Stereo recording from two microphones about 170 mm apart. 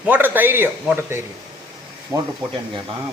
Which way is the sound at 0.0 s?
10° right (ahead or behind).